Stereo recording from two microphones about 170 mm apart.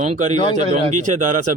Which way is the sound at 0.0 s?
45° right (ahead or behind).